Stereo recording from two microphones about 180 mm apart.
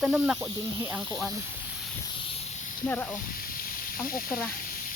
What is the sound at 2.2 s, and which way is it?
Snake, 35° left (ahead or behind).